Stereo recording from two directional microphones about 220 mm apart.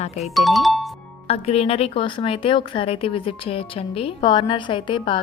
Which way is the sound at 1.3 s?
25° left (ahead or behind).